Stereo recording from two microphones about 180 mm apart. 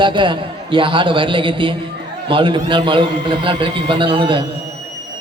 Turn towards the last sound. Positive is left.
turn(degrees=-30)  # may be behind; listen again after turning